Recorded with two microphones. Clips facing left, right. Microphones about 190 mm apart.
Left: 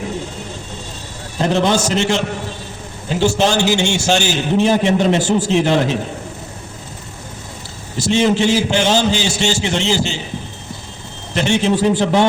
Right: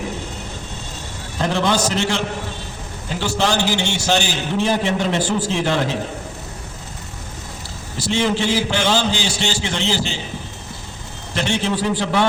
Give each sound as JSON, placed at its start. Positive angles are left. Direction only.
{"t": 1.4, "sound": "a man's voice", "side_deg": 20}
{"t": 8.0, "sound": "a man's voice", "side_deg": 20}
{"t": 11.3, "sound": "a man's voice", "side_deg": 20}